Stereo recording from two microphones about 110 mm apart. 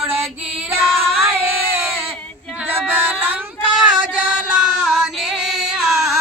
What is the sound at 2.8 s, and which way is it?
Child singing, 15° right (ahead or behind).